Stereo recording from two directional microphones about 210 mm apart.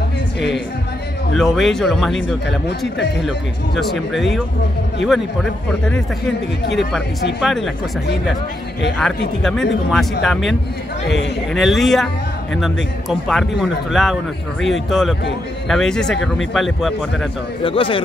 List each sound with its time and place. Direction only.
1.3 s speech: centre (ahead or behind)
3.3 s speech: centre (ahead or behind)
6.6 s speech: 55° left (ahead or behind)
7.3 s speech: centre (ahead or behind)
9.4 s speech: centre (ahead or behind)
11.5 s speech: centre (ahead or behind)
17.6 s speech: 25° left (ahead or behind)